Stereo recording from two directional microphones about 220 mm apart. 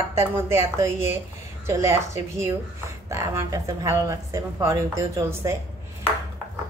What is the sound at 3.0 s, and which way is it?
A woman's voice, 15° right (ahead or behind).